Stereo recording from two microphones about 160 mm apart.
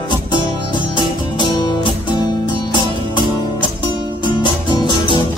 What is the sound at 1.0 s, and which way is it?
Music, 30° left (ahead or behind).